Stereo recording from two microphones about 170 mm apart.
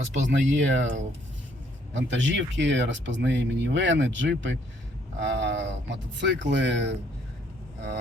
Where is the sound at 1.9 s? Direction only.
90° right.